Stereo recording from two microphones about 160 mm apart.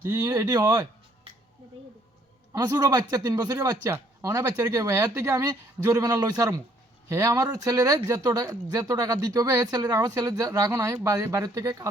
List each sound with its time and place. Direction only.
0.0 s speech: 20° right (ahead or behind)
2.5 s speech: 25° right (ahead or behind)